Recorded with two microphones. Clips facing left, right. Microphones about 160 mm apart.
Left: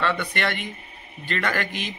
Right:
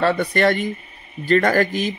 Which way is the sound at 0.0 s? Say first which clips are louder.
Right 8 dB; 40° right (ahead or behind).